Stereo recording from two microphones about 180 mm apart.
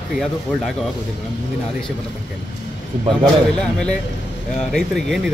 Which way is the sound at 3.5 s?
5° left (ahead or behind).